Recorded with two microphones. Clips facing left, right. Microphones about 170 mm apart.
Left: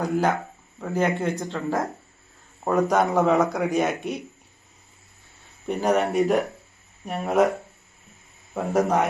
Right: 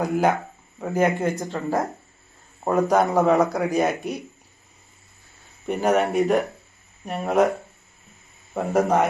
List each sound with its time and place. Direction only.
0.0 s a man's voice: 15° right (ahead or behind); by 4.2 s centre (ahead or behind)
5.6 s a man's voice: 5° right (ahead or behind)
8.5 s a man's voice: centre (ahead or behind)